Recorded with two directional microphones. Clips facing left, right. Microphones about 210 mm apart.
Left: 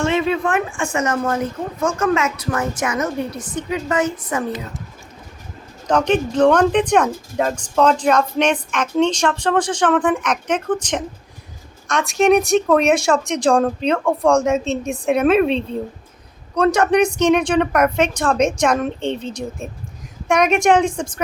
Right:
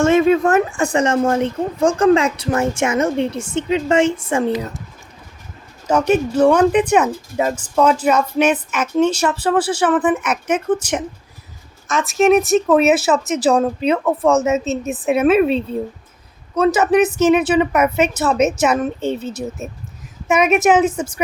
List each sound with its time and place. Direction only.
0.0 s speech: 45° right (ahead or behind); by 4.5 s 25° right (ahead or behind)
5.9 s speech: 10° right (ahead or behind)